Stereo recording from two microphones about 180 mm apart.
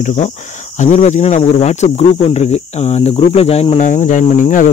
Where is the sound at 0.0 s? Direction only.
40° left (ahead or behind).